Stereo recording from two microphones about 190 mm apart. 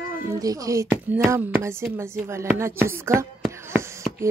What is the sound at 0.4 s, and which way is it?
A woman's voice, 20° right (ahead or behind).